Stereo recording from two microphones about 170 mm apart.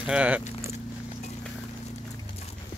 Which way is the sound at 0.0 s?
5° right (ahead or behind).